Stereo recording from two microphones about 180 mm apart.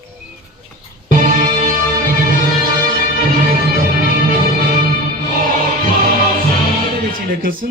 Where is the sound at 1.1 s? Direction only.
50° right (ahead or behind).